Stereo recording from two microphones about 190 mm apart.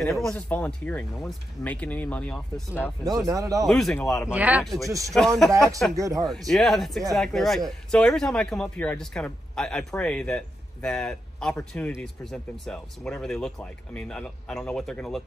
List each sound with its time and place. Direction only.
0.0 s speech: centre (ahead or behind)
3.0 s speech: 20° right (ahead or behind)
3.6 s speech: 5° left (ahead or behind)
5.5 s speech: 15° right (ahead or behind)
6.2 s speech: centre (ahead or behind)